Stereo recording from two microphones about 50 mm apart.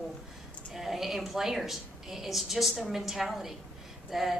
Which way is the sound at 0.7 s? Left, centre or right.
Centre.